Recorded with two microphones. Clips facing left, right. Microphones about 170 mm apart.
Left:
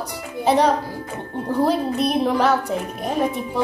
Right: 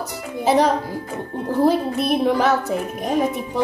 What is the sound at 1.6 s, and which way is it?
A child's voice, 5° right (ahead or behind).